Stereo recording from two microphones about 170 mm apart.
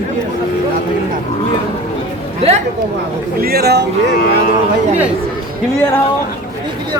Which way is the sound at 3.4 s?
65° right (ahead or behind).